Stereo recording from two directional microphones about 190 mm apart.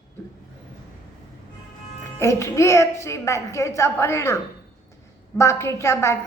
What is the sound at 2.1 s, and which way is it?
A woman's voice, 15° left (ahead or behind).